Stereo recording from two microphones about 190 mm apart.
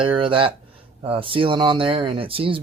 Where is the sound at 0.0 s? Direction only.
25° right (ahead or behind).